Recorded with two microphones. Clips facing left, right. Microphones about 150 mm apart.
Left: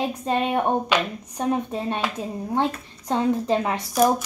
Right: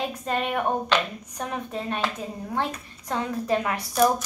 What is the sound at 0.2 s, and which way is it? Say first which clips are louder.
A child's voice: left 3 dB; 25° left (ahead or behind).